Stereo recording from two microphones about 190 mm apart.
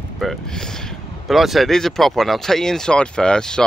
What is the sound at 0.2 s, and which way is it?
Speech, centre (ahead or behind).